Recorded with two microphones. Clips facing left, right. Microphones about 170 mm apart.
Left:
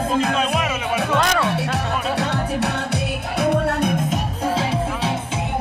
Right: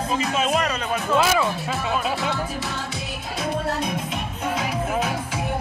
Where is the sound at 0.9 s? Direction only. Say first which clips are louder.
Left 2 dB; 75° left (ahead or behind).